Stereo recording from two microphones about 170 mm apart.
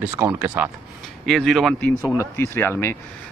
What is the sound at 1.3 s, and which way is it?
Speech, centre (ahead or behind).